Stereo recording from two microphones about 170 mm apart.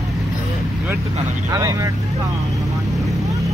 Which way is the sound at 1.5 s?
20° right (ahead or behind).